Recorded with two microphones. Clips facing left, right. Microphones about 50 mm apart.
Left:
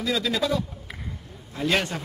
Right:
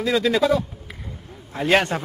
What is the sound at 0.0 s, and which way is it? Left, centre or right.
Speech, right.